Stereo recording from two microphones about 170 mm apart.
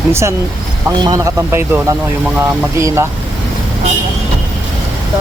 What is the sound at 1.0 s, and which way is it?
Speech, 20° right (ahead or behind).